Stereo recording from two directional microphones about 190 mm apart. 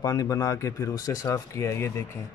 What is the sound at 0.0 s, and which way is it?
Speech, 20° left (ahead or behind).